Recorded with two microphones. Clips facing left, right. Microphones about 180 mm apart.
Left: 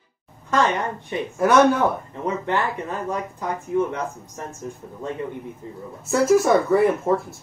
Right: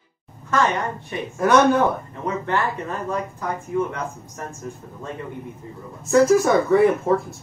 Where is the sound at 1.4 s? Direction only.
5° left (ahead or behind).